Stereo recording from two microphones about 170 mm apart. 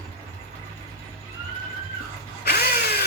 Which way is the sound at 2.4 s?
70° left (ahead or behind).